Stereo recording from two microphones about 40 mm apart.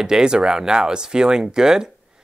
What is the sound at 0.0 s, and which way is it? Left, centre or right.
Speech, centre.